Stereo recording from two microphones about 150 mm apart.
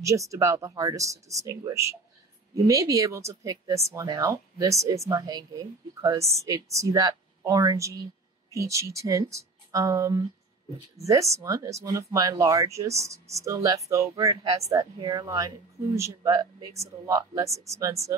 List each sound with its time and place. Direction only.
0.0 s speech: 20° right (ahead or behind)